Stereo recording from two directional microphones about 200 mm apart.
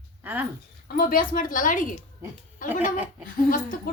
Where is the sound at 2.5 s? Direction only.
40° left (ahead or behind).